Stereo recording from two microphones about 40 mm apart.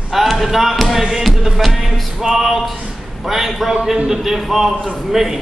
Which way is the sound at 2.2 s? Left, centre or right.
Centre.